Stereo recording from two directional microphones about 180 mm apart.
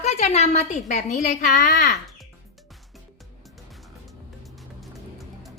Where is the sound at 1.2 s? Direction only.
55° left (ahead or behind).